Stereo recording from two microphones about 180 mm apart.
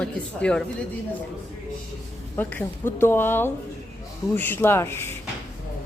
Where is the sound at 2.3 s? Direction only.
10° left (ahead or behind).